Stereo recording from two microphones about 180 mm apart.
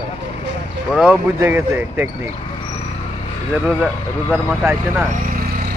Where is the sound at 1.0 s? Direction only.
10° right (ahead or behind).